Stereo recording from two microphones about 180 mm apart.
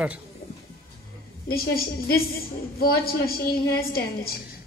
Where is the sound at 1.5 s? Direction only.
55° left (ahead or behind).